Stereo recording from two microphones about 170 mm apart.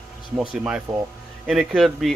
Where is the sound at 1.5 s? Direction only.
Centre (ahead or behind).